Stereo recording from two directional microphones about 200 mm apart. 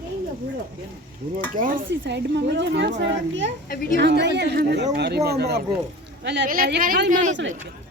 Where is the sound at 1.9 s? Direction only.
60° right (ahead or behind).